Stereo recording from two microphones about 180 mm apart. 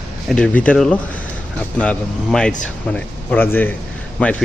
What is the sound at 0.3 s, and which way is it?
A man's voice, 5° left (ahead or behind).